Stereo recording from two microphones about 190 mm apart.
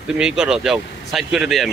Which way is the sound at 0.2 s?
5° right (ahead or behind).